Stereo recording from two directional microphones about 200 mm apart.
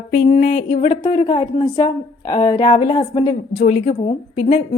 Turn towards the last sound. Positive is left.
turn(degrees=30)  # may be behind; listen again after turning